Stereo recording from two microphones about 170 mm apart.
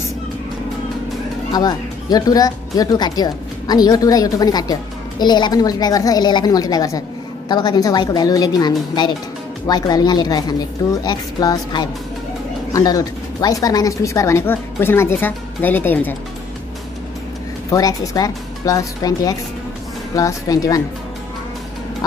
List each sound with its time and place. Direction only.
1.5 s speech: 25° left (ahead or behind)
17.6 s speech: 20° left (ahead or behind)